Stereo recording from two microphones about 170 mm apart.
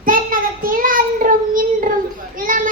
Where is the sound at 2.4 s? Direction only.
50° right (ahead or behind).